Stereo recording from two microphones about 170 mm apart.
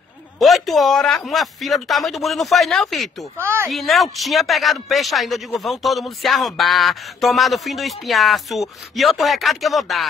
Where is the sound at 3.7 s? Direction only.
Centre (ahead or behind).